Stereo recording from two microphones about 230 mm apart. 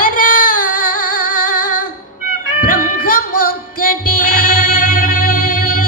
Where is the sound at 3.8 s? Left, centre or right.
Left.